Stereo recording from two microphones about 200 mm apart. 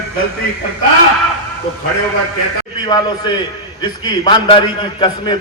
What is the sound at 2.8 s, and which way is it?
A man's voice, 20° left (ahead or behind).